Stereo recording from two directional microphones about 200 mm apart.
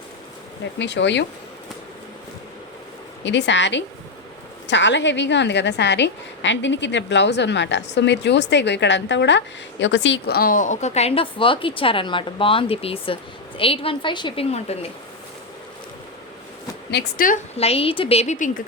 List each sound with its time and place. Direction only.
0.8 s a woman's voice: 60° left (ahead or behind)
3.2 s a woman's voice: 60° left (ahead or behind); by 14.8 s 30° left (ahead or behind)
16.9 s a woman's voice: 45° left (ahead or behind)